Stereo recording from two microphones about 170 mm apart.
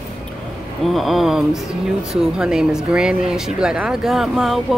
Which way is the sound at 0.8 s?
Centre (ahead or behind).